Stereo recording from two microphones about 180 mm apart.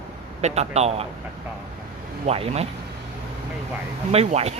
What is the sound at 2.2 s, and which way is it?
Speech, 35° right (ahead or behind).